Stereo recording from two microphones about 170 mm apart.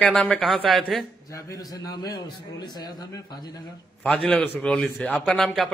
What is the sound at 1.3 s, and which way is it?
A man's voice, 20° left (ahead or behind).